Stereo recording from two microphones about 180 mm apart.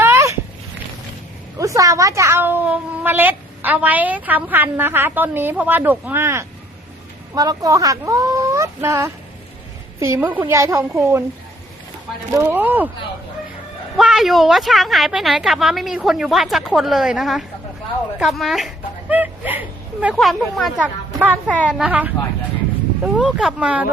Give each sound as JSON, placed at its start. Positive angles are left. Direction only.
{"t": 0.0, "sound": "a sound", "side_deg": -15}
{"t": 1.5, "sound": "a woman's voice", "side_deg": -20}
{"t": 12.3, "sound": "a woman's voice", "side_deg": -10}
{"t": 13.9, "sound": "a woman's voice", "side_deg": 0}
{"t": 23.1, "sound": "a woman's voice", "side_deg": -5}